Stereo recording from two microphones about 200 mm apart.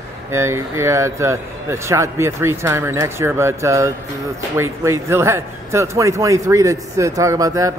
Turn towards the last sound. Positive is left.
turn(degrees=-15)  # may be behind; listen again after turning